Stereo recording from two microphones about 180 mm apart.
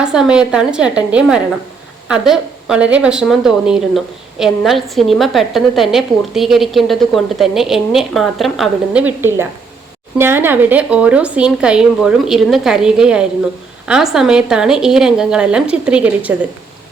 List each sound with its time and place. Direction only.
0.0 s a woman's voice: 5° right (ahead or behind)